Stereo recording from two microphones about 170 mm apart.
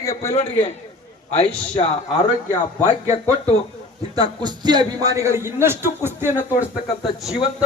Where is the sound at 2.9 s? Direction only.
40° left (ahead or behind).